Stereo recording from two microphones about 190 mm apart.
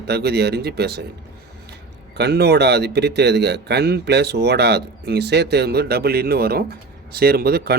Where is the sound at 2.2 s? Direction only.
60° right (ahead or behind).